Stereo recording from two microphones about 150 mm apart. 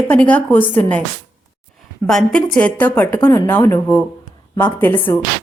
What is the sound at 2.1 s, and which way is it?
A woman's voice, 5° left (ahead or behind).